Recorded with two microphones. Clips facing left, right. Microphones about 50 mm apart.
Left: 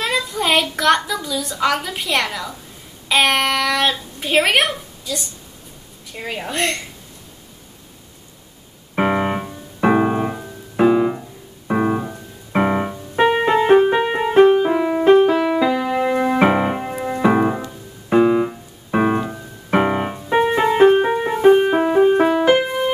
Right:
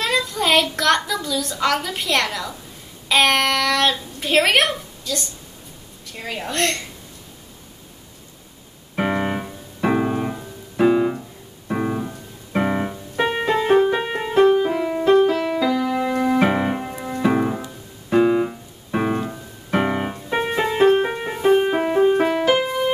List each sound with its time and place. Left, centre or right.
0.0 s a child's voice: centre
8.9 s keyboard: centre
9.8 s piano: centre
13.2 s music: centre
17.6 s keyboard: centre
18.9 s music: centre